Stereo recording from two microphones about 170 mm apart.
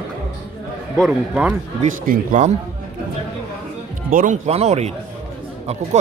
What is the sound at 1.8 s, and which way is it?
Speech, 45° right (ahead or behind).